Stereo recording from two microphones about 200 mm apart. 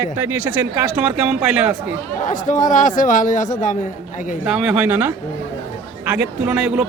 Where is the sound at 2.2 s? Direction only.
40° left (ahead or behind).